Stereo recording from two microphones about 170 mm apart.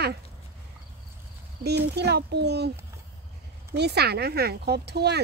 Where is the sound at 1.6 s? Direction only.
75° right (ahead or behind).